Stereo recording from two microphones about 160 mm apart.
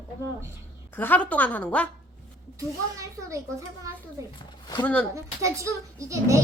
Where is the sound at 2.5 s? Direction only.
20° right (ahead or behind).